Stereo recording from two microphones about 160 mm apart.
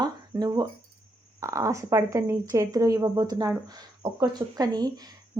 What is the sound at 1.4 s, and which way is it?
Speech, 20° right (ahead or behind).